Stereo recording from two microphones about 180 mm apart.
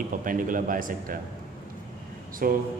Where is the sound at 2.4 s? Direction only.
50° right (ahead or behind).